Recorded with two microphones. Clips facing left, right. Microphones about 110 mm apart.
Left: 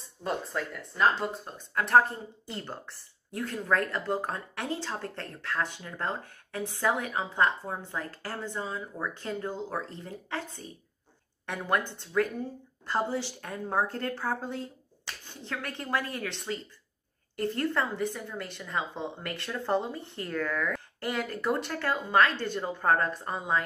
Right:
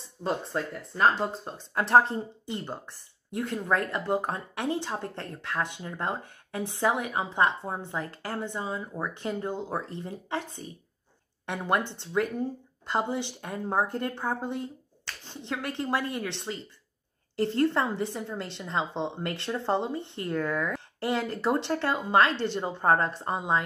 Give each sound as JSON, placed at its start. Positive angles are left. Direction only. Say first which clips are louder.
{"t": 0.2, "sound": "speech", "louder": "right 2 dB", "side_deg": -30}
{"t": 11.4, "sound": "speech", "louder": "right 2 dB", "side_deg": -20}